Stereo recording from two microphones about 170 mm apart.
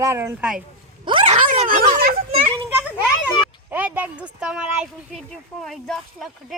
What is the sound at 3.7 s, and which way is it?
Speech, 10° right (ahead or behind).